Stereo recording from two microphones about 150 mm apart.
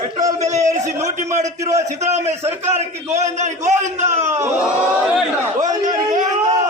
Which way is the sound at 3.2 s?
50° right (ahead or behind).